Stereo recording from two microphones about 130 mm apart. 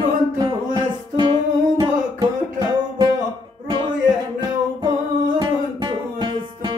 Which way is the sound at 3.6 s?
40° right (ahead or behind).